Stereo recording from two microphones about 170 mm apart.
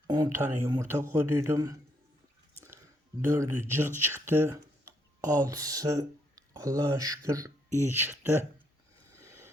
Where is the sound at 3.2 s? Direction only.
15° right (ahead or behind).